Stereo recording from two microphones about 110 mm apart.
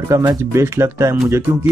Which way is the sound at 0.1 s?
30° right (ahead or behind).